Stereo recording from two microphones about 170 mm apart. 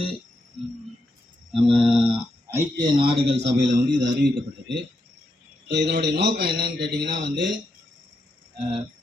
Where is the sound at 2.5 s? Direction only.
25° right (ahead or behind).